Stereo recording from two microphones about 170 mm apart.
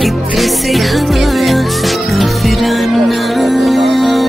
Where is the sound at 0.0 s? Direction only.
Centre (ahead or behind).